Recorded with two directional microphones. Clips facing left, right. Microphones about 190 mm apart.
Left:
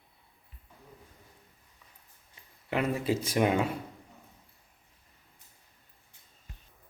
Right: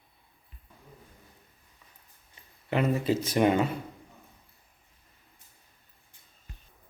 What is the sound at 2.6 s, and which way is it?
Speech, 5° left (ahead or behind).